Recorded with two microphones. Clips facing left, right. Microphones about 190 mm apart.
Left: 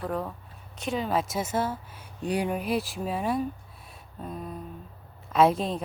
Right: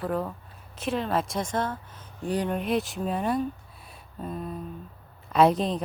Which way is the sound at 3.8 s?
Centre (ahead or behind).